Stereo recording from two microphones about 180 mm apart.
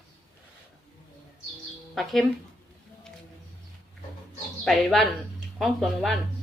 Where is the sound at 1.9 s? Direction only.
Centre (ahead or behind).